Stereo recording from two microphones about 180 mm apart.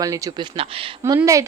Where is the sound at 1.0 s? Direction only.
20° right (ahead or behind).